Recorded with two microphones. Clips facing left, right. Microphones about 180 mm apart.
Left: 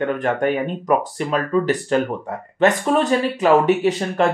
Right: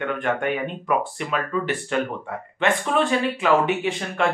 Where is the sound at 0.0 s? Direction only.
40° left (ahead or behind).